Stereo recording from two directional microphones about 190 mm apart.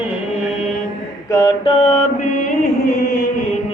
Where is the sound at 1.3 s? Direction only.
20° left (ahead or behind).